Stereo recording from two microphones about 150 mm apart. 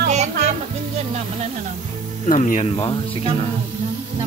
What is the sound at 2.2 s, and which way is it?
Speech, 55° left (ahead or behind).